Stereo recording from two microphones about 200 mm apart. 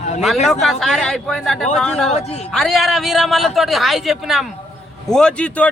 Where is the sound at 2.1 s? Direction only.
35° left (ahead or behind).